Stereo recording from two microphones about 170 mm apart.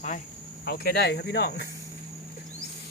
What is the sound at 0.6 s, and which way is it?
Speech, 65° left (ahead or behind).